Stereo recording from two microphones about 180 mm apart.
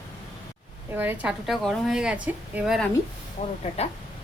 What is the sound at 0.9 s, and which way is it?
A woman's voice, 10° right (ahead or behind).